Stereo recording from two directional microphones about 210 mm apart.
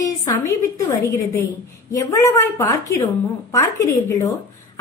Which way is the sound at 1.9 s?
15° left (ahead or behind).